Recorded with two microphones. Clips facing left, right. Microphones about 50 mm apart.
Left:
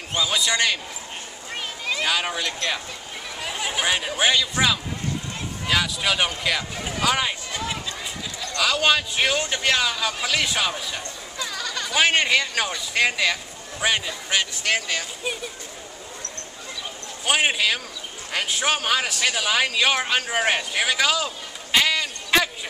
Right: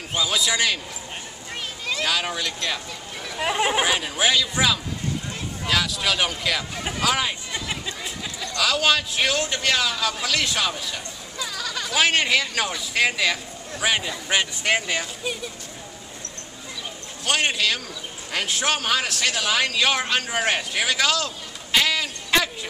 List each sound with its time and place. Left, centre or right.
0.2 s a man's voice: centre
1.9 s speech: centre
3.3 s speech: right
3.8 s a man's voice: centre
8.5 s a man's voice: centre
14.3 s speech: centre
17.2 s a man's voice: centre
21.7 s a sound: centre